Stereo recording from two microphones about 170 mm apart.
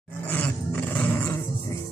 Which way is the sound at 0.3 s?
10° left (ahead or behind).